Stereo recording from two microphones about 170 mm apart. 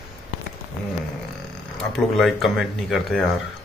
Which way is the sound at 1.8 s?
Centre (ahead or behind).